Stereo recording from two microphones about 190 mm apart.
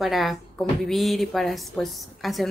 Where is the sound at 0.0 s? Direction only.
Centre (ahead or behind).